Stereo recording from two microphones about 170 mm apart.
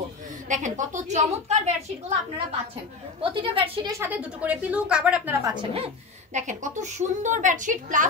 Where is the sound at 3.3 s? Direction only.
30° right (ahead or behind).